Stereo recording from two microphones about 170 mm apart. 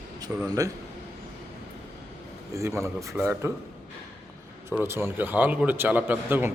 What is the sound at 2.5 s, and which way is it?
A man's voice, 15° right (ahead or behind).